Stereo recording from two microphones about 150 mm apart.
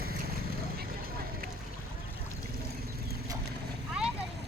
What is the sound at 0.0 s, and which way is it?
Vehicle, 90° right.